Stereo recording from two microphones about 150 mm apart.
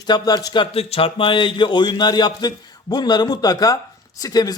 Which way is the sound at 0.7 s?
40° left (ahead or behind).